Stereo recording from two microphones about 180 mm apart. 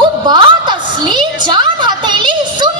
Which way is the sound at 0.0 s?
25° right (ahead or behind).